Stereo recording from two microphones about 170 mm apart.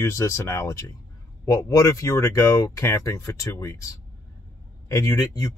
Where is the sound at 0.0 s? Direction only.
15° left (ahead or behind).